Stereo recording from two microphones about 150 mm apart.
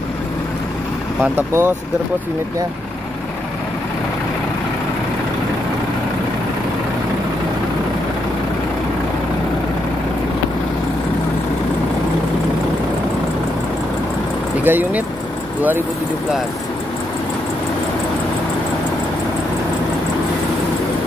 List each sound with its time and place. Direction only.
1.2 s speech: 15° right (ahead or behind)
14.6 s speech: 10° right (ahead or behind)